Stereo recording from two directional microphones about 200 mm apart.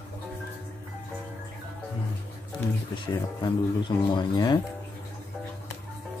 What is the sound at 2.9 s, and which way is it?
Speech, 25° left (ahead or behind).